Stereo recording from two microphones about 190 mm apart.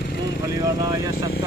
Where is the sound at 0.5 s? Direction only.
20° right (ahead or behind).